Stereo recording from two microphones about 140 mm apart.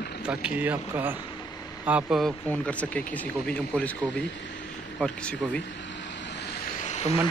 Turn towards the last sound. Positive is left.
turn(degrees=55)  # may be behind; listen again after turning